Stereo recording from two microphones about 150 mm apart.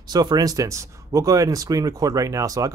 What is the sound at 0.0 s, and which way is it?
Speech, 25° right (ahead or behind).